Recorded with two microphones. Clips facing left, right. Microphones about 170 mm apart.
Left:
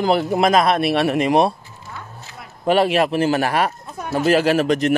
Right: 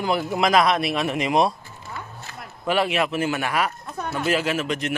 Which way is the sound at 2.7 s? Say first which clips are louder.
Left 6 dB; 35° left (ahead or behind).